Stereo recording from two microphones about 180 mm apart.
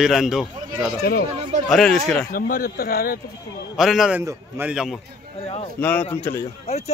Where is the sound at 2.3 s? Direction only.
55° left (ahead or behind).